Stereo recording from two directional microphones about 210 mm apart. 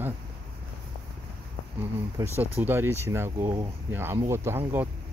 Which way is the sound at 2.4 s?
10° right (ahead or behind).